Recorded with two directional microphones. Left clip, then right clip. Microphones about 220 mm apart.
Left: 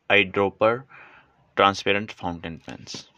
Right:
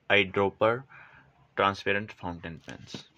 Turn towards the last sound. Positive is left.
turn(degrees=35)  # may be behind; listen again after turning